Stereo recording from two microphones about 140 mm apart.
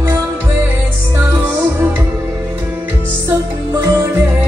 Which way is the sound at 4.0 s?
15° right (ahead or behind).